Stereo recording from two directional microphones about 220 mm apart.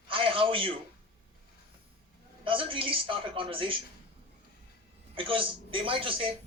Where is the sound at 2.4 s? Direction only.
25° right (ahead or behind).